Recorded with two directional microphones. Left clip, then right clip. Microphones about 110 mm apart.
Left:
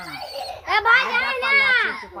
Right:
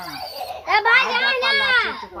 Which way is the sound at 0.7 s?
35° right (ahead or behind).